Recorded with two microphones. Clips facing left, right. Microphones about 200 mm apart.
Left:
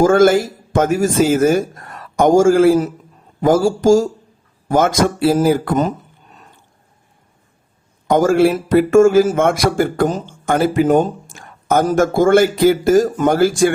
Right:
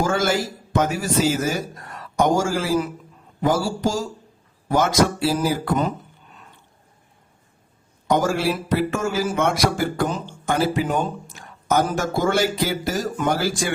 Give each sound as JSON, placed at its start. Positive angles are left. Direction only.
{"t": 0.0, "sound": "speech", "side_deg": 50}
{"t": 8.0, "sound": "speech", "side_deg": 55}